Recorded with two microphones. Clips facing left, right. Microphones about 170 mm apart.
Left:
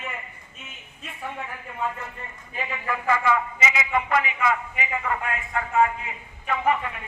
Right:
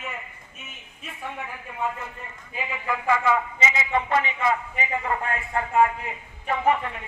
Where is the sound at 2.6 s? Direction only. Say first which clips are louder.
Even; 15° right (ahead or behind).